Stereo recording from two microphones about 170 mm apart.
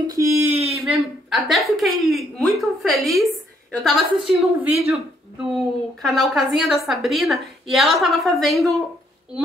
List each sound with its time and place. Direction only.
0.0 s speech: 20° right (ahead or behind)
0.7 s a woman's voice: centre (ahead or behind)
6.0 s a woman's voice: centre (ahead or behind)